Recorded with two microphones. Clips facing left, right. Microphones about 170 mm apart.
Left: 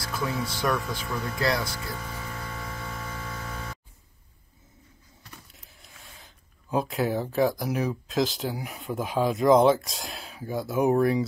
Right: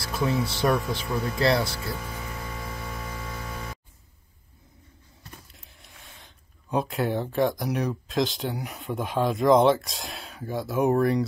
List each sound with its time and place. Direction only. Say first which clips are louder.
0.0 s speech: right 4 dB; 25° right (ahead or behind)
5.5 s speech: right 1 dB; centre (ahead or behind)